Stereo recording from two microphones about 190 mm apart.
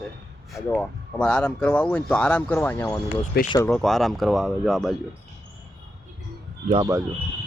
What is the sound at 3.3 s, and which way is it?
Speech, 55° left (ahead or behind).